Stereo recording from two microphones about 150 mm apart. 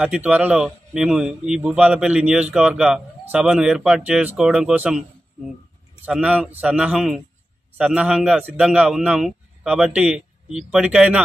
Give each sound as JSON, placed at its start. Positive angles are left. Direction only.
{"t": 0.0, "sound": "a man's voice", "side_deg": -10}
{"t": 6.0, "sound": "a man's voice", "side_deg": -5}